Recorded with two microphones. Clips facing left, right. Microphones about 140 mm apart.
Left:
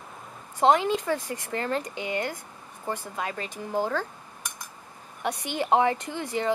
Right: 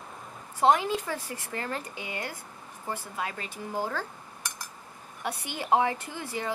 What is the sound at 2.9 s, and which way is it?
Speech, 10° right (ahead or behind).